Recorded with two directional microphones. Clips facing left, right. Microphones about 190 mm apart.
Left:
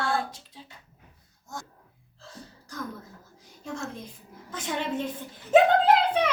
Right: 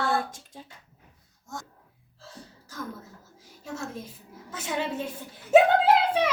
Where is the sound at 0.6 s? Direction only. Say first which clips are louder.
Right 3 dB; 50° right (ahead or behind).